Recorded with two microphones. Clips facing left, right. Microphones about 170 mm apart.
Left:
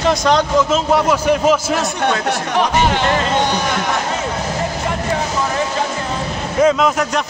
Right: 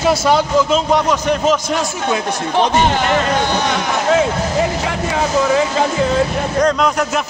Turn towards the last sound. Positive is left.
turn(degrees=0)  # may be behind; listen again after turning